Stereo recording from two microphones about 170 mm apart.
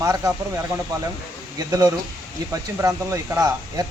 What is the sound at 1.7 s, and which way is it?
Speech, 20° right (ahead or behind).